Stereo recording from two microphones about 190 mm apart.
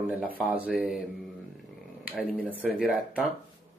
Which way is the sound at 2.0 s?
5° right (ahead or behind).